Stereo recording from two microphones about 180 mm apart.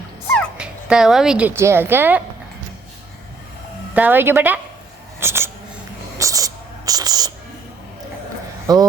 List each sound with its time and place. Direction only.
0.5 s speech: 5° right (ahead or behind)
3.9 s speech: 10° right (ahead or behind)
6.1 s a sound: 20° right (ahead or behind)
8.6 s speech: 20° right (ahead or behind)